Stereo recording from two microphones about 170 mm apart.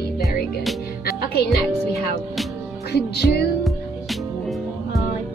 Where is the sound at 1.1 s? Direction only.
65° left (ahead or behind).